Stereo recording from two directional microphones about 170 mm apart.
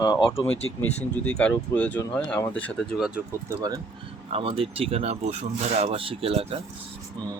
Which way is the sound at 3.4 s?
20° right (ahead or behind).